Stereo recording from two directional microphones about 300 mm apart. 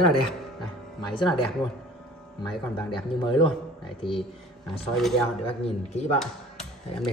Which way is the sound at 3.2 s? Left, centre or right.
Centre.